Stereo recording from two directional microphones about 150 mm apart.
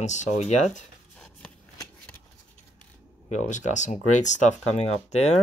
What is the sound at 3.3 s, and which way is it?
Speech, 55° left (ahead or behind).